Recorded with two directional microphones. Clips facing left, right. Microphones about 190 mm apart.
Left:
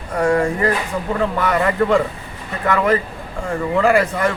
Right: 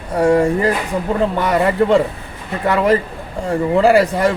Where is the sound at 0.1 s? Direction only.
30° right (ahead or behind).